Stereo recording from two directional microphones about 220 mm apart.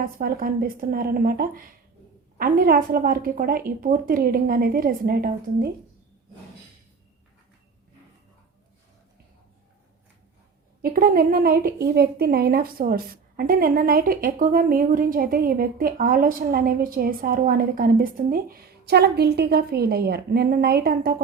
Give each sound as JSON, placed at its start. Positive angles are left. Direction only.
{"t": 0.0, "sound": "a woman's voice", "side_deg": -40}
{"t": 10.8, "sound": "a woman's voice", "side_deg": -40}